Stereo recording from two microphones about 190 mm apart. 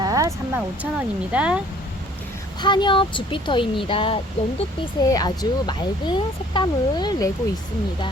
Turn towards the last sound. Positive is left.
turn(degrees=20)  # may be behind; listen again after turning